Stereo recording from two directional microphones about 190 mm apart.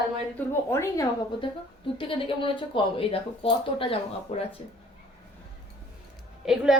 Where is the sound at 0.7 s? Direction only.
15° left (ahead or behind).